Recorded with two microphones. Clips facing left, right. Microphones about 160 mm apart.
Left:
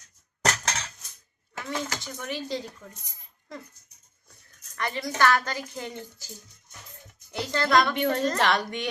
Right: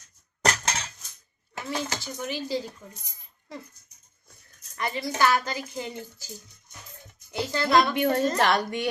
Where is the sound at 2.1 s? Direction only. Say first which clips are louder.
Right 3 dB; 5° right (ahead or behind).